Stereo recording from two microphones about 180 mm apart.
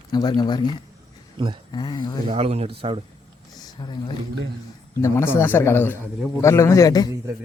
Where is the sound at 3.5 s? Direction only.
20° left (ahead or behind).